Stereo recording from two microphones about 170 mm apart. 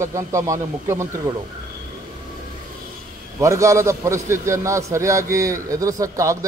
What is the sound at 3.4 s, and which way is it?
A man's voice, 20° right (ahead or behind).